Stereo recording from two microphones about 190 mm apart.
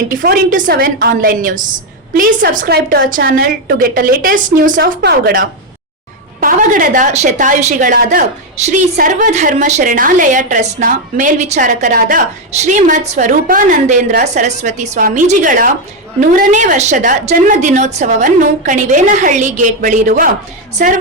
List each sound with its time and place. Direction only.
0.1 s a woman's voice: 45° right (ahead or behind)
2.6 s a woman's voice: 55° right (ahead or behind)